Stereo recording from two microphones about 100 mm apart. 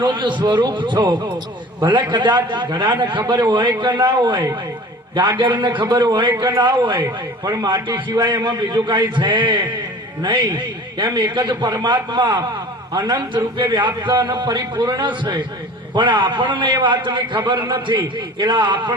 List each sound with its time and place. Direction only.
0.0 s a man's voice: 50° right (ahead or behind)